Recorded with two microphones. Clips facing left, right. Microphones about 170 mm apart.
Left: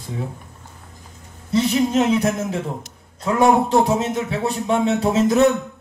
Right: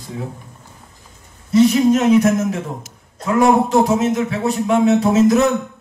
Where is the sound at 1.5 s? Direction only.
30° left (ahead or behind).